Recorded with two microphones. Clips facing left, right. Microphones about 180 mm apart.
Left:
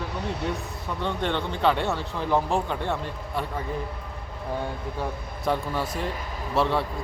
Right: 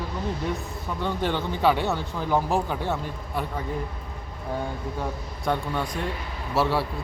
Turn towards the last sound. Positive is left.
turn(degrees=-5)  # may be behind; listen again after turning